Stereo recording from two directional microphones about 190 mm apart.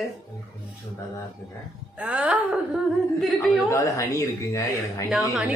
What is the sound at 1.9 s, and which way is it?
A woman's voice, 5° right (ahead or behind).